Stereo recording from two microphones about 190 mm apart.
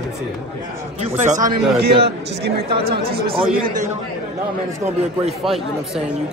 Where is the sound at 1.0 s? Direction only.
35° right (ahead or behind); by 2.5 s 60° right (ahead or behind).